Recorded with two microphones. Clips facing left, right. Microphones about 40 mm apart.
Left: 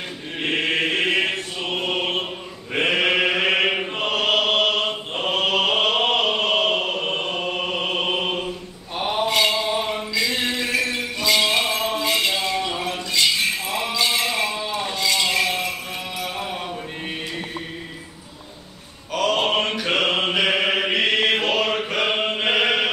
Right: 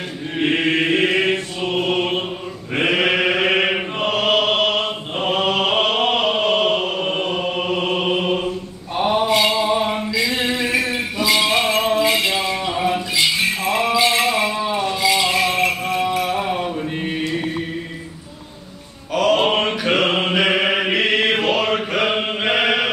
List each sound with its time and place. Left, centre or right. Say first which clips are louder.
0.4 s chant: right 4 dB; centre
8.9 s mantra: right 4 dB; centre
10.1 s a sound: right 1 dB; centre
11.7 s music: right 5 dB; right
12.0 s music: right 4 dB; centre
13.7 s jingle bell: right 7 dB; right
14.2 s a sound: right 5 dB; centre
16.2 s a sound: right 8 dB; right
19.1 s mantra: right 4 dB; centre